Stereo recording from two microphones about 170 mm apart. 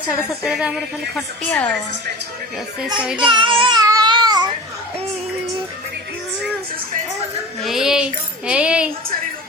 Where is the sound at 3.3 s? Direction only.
30° right (ahead or behind).